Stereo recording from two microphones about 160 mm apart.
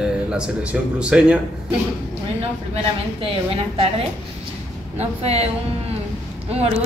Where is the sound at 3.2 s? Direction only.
35° right (ahead or behind).